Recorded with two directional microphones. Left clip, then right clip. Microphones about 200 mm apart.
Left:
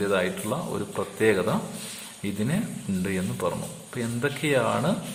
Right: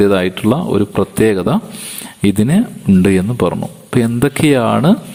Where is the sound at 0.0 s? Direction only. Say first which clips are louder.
Right 12 dB; 45° right (ahead or behind).